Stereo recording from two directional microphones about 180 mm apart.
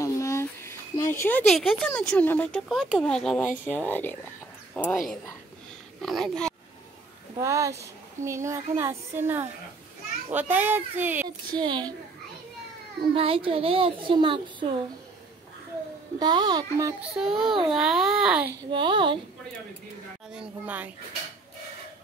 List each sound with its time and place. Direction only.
0.0 s a sound: 15° left (ahead or behind)
1.5 s speech: centre (ahead or behind)
7.3 s speech: 15° right (ahead or behind)
11.2 s a woman's voice: 25° right (ahead or behind)
13.1 s a woman's voice: 30° right (ahead or behind)
16.2 s a woman's voice: 25° right (ahead or behind)
17.2 s speech: centre (ahead or behind)
18.7 s a woman's voice: 25° right (ahead or behind)
20.3 s speech: 10° right (ahead or behind)